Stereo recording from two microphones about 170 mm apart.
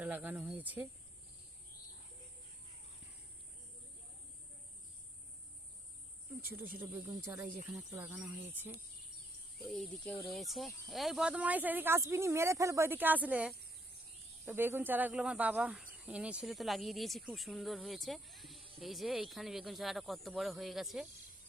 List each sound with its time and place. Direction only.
0.0 s speech: 10° right (ahead or behind)
6.5 s speech: 10° right (ahead or behind)
9.6 s speech: centre (ahead or behind)